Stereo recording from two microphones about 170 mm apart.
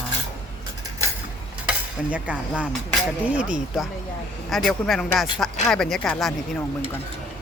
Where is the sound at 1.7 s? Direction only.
5° right (ahead or behind).